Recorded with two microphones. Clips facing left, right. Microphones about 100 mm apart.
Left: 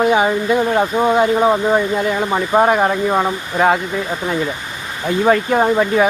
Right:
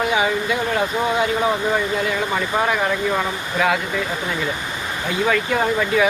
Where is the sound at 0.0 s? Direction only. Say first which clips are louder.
Left 5 dB; 45° left (ahead or behind).